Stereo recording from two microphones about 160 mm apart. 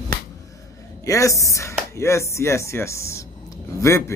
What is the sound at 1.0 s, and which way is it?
Speech, 20° left (ahead or behind).